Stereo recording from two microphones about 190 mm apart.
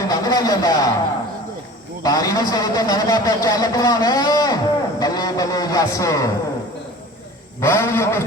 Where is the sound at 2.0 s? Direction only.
20° left (ahead or behind).